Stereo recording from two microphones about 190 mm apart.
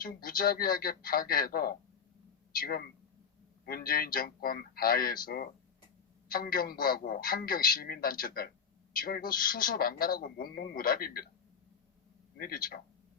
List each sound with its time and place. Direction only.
0.0 s a man's voice: 50° left (ahead or behind)
12.4 s a man's voice: 50° left (ahead or behind)